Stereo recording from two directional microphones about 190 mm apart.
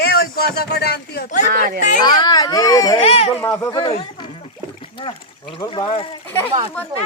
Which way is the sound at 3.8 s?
25° left (ahead or behind).